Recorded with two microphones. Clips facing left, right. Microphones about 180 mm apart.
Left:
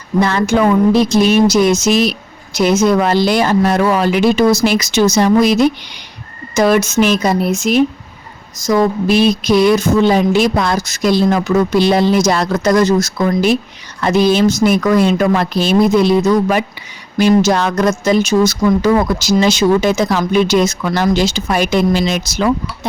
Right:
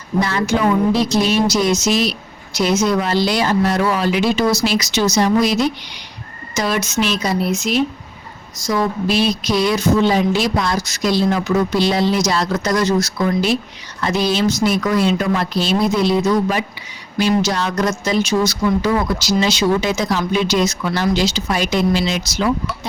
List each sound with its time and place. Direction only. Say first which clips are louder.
0.2 s a woman's voice: left 5 dB; 60° left (ahead or behind)